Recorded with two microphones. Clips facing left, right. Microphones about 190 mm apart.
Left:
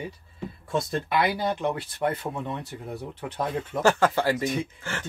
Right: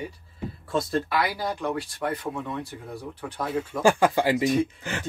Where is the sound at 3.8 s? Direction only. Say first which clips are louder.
Right 1 dB; 10° right (ahead or behind).